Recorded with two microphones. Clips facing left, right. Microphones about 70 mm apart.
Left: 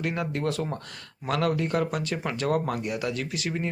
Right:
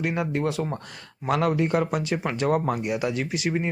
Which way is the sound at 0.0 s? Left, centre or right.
Centre.